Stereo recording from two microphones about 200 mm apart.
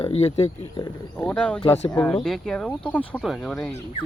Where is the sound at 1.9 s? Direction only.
5° left (ahead or behind).